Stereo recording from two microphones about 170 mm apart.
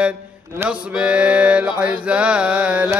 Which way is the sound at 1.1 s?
5° right (ahead or behind).